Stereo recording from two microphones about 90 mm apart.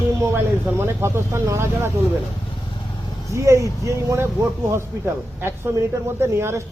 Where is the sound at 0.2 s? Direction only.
30° right (ahead or behind).